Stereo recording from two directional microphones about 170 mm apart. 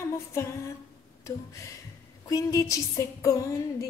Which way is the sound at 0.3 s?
15° left (ahead or behind).